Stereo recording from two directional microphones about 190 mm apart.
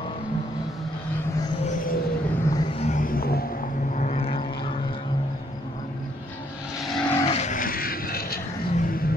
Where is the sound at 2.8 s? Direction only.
40° left (ahead or behind).